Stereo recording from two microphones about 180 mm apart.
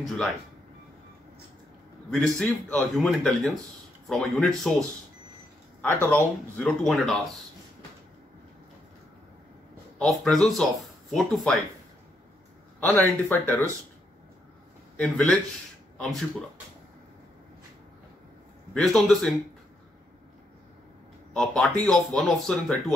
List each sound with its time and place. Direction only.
2.0 s speech: 5° left (ahead or behind)
5.8 s speech: 10° left (ahead or behind)
9.9 s speech: centre (ahead or behind)
12.8 s speech: 5° left (ahead or behind)
15.0 s speech: 5° left (ahead or behind)
18.7 s speech: centre (ahead or behind)
21.3 s speech: 5° left (ahead or behind)